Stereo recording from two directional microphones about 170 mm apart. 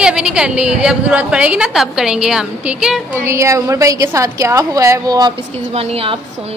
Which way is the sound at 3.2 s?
15° right (ahead or behind).